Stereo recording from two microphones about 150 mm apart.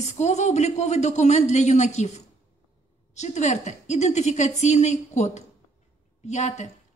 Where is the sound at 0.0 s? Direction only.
50° left (ahead or behind).